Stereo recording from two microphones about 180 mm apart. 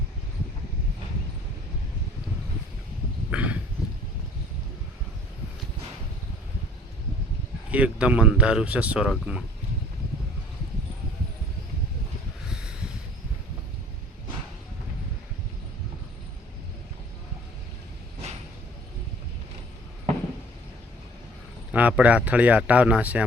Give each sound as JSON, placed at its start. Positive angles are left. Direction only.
{"t": 3.2, "sound": "a sound", "side_deg": -10}
{"t": 7.7, "sound": "speech", "side_deg": -5}
{"t": 21.7, "sound": "speech", "side_deg": -10}